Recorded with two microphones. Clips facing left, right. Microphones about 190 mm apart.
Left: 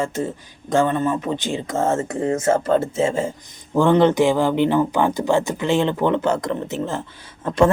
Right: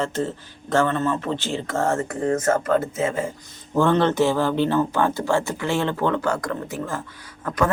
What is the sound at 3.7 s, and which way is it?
Speech, 15° left (ahead or behind).